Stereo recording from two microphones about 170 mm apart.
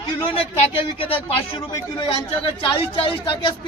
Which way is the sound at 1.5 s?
30° left (ahead or behind).